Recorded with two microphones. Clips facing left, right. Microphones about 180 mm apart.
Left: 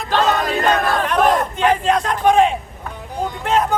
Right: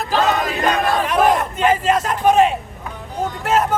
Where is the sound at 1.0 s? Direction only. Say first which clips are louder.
Even; 5° right (ahead or behind).